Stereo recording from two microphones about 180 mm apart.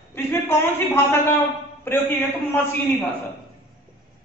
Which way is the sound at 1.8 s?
10° left (ahead or behind).